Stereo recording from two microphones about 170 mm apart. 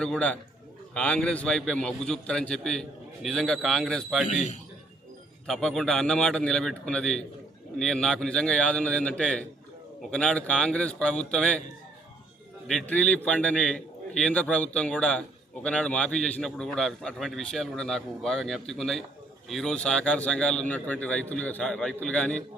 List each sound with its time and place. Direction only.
0.0 s a man's voice: 5° left (ahead or behind)
4.3 s a man's voice: 45° left (ahead or behind)
5.5 s a man's voice: 5° left (ahead or behind)
12.6 s a man's voice: 5° left (ahead or behind)